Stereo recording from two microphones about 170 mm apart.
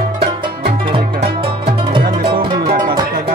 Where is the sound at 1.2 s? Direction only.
35° right (ahead or behind).